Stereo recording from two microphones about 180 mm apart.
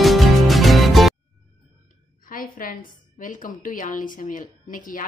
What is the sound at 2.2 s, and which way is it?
A woman's voice, 50° left (ahead or behind).